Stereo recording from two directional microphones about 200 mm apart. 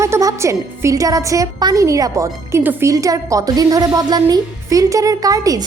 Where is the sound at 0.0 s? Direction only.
15° right (ahead or behind).